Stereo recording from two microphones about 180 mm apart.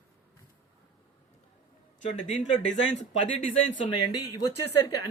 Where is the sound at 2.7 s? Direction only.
90° left.